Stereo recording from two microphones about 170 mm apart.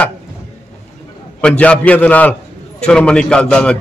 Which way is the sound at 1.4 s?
5° left (ahead or behind).